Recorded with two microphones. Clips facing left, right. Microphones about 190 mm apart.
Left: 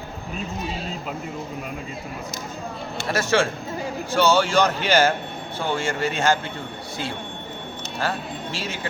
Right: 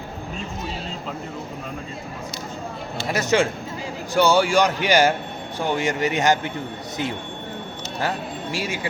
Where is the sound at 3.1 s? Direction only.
15° right (ahead or behind).